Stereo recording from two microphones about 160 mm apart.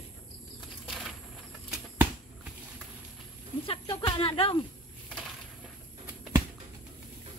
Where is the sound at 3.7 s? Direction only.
30° left (ahead or behind).